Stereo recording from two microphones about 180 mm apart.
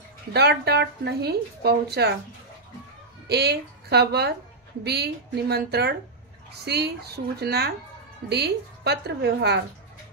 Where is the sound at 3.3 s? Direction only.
65° right (ahead or behind).